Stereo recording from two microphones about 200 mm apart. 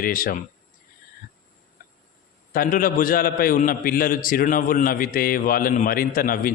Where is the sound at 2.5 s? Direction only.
45° left (ahead or behind).